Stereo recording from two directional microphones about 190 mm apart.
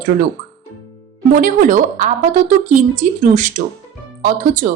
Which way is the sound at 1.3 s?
45° right (ahead or behind).